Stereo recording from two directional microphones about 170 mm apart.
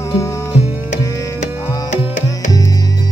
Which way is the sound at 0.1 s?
20° left (ahead or behind).